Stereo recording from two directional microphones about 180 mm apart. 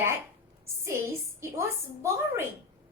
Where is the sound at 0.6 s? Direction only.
15° right (ahead or behind).